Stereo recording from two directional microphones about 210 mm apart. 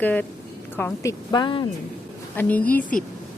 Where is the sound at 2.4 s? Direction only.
5° left (ahead or behind).